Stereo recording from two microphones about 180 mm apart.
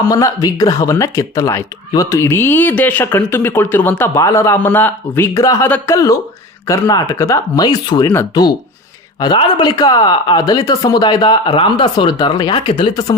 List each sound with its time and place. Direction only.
0.1 s speech: 20° left (ahead or behind)
9.2 s speech: 25° left (ahead or behind)